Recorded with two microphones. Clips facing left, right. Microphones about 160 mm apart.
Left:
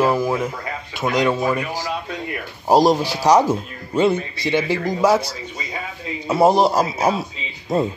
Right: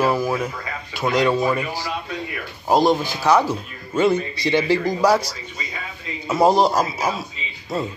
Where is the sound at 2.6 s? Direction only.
35° left (ahead or behind).